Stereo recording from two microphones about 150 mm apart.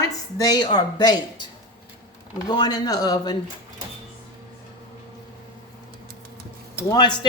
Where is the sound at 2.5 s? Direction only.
25° left (ahead or behind).